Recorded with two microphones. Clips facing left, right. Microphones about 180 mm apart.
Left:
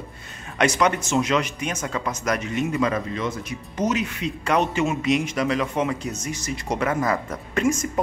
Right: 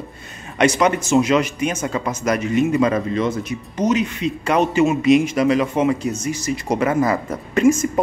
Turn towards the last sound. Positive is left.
turn(degrees=-5)  # may be behind; listen again after turning